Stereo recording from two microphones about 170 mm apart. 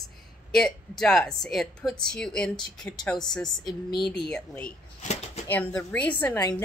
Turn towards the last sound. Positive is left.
turn(degrees=10)  # may be behind; listen again after turning